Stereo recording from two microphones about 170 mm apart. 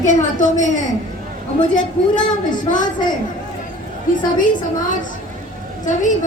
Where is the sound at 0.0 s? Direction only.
45° left (ahead or behind).